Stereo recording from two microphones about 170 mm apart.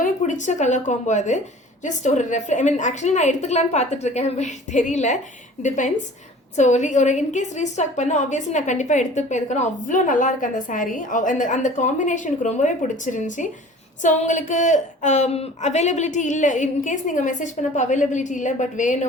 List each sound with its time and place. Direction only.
0.0 s a woman's voice: 45° left (ahead or behind)